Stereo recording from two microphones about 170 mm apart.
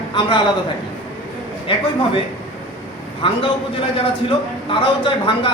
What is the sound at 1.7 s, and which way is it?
Speech, 30° left (ahead or behind).